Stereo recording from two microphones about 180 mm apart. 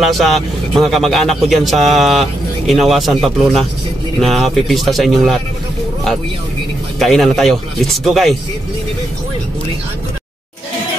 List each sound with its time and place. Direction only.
0.0 s speech: centre (ahead or behind)
4.2 s speech: centre (ahead or behind)
7.0 s speech: centre (ahead or behind)